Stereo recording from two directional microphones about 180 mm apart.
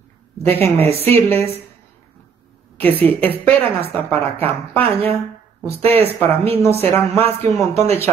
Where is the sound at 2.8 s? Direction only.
10° left (ahead or behind).